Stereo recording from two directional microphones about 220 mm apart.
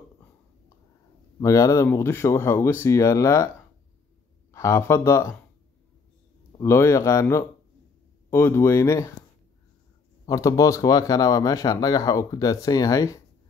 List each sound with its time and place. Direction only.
1.4 s speech: 15° left (ahead or behind)
4.5 s speech: 15° left (ahead or behind)
6.6 s speech: 15° left (ahead or behind)
10.2 s speech: 15° left (ahead or behind)